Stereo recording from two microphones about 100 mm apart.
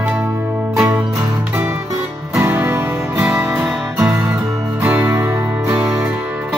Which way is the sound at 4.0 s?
25° right (ahead or behind).